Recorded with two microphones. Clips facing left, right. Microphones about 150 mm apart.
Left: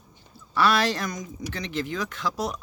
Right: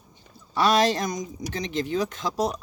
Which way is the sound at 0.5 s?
20° right (ahead or behind).